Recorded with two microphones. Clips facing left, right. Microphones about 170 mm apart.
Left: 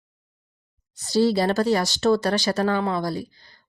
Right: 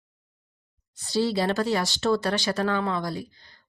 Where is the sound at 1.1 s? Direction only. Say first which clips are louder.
Left 4 dB; 40° left (ahead or behind).